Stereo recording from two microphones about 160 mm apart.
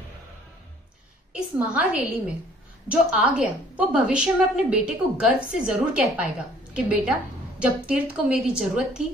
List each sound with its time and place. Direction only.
1.3 s a woman's voice: 5° right (ahead or behind)